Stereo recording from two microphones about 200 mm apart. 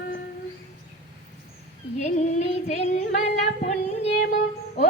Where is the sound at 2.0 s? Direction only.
35° left (ahead or behind).